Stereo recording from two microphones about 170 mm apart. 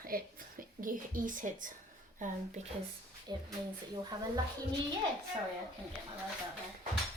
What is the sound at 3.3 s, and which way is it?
Speech, 25° right (ahead or behind).